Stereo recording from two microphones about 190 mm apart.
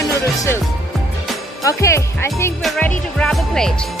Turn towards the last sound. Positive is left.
turn(degrees=5)  # may be behind; listen again after turning